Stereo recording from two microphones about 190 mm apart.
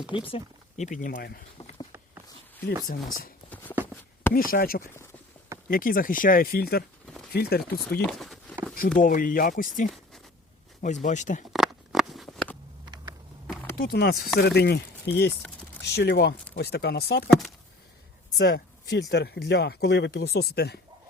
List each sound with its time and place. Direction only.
0.1 s speech: 30° left (ahead or behind)
1.1 s speech: 55° left (ahead or behind)
3.5 s a sound: 10° left (ahead or behind)
4.4 s speech: 50° left (ahead or behind)
8.0 s a sound: centre (ahead or behind)
9.0 s speech: 45° left (ahead or behind)
11.5 s a sound: centre (ahead or behind)
13.7 s speech: 55° left (ahead or behind)
18.3 s speech: 60° left (ahead or behind)